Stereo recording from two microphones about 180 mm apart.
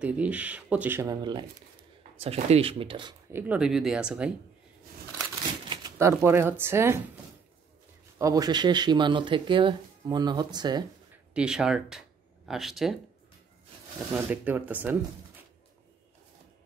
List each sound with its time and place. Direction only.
0.0 s speech: 5° right (ahead or behind)
2.1 s speech: 35° right (ahead or behind)
3.3 s speech: 10° right (ahead or behind)
5.7 s shuffling cards: 20° right (ahead or behind)
6.6 s speech: 15° right (ahead or behind)
8.2 s speech: 20° right (ahead or behind)
11.3 s speech: 5° right (ahead or behind)
14.1 s speech: 10° right (ahead or behind)